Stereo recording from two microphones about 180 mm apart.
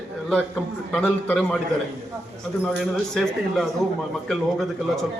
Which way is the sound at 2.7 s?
Centre (ahead or behind).